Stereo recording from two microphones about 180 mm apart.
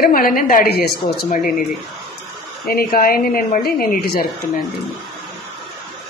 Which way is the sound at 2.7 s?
55° left (ahead or behind).